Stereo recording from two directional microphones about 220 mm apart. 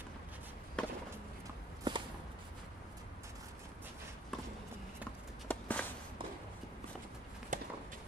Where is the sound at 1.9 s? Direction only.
20° right (ahead or behind).